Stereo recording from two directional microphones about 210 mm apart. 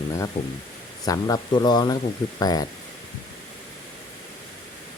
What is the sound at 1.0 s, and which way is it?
Speech, 15° left (ahead or behind).